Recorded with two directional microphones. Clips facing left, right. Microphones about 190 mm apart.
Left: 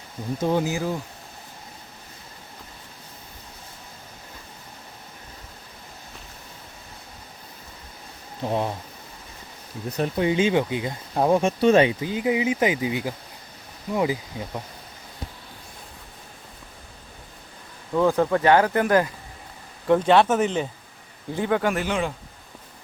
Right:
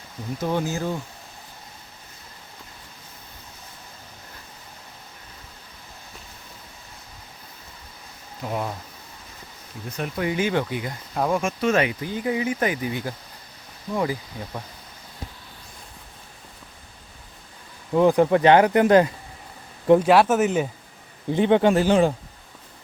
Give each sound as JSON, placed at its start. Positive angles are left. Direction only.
{"t": 0.5, "sound": "speech", "side_deg": 15}
{"t": 8.4, "sound": "speech", "side_deg": 25}
{"t": 10.0, "sound": "speech", "side_deg": 25}
{"t": 17.9, "sound": "speech", "side_deg": -15}
{"t": 19.9, "sound": "speech", "side_deg": -5}
{"t": 21.3, "sound": "speech", "side_deg": -25}